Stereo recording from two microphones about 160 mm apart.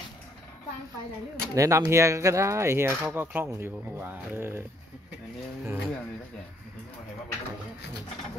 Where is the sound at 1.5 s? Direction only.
20° right (ahead or behind).